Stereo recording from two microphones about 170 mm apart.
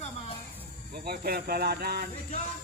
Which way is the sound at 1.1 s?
65° right (ahead or behind).